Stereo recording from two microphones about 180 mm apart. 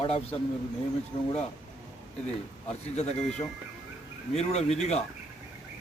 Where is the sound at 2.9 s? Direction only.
35° left (ahead or behind).